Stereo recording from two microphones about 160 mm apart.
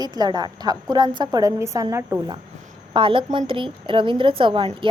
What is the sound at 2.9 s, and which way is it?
A woman's voice, 35° right (ahead or behind).